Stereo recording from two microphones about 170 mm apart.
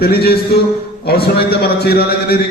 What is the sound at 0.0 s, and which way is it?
A man's voice, 65° left (ahead or behind).